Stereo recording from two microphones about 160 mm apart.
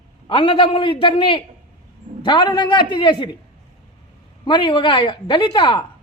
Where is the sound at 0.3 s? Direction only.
30° left (ahead or behind).